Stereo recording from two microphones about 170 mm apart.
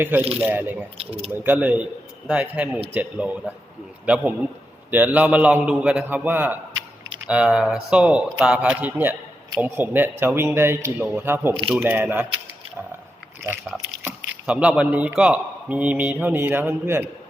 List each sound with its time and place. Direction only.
0.0 s speech: 10° right (ahead or behind)
0.9 s speech: 35° right (ahead or behind)
1.3 s speech: 10° right (ahead or behind)
14.4 s speech: 5° right (ahead or behind)